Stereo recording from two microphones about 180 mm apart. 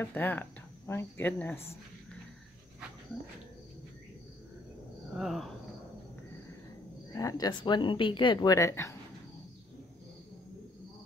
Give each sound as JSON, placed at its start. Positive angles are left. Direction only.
{"t": 0.0, "sound": "speech", "side_deg": 10}
{"t": 5.1, "sound": "cricket", "side_deg": 0}
{"t": 7.2, "sound": "speech", "side_deg": 20}